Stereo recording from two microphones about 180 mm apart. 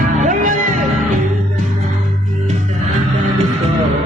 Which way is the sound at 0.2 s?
45° right (ahead or behind).